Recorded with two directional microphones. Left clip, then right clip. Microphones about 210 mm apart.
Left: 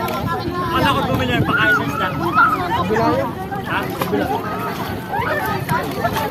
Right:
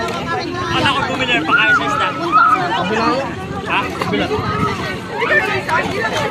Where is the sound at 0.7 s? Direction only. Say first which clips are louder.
Right 1 dB; 60° left (ahead or behind).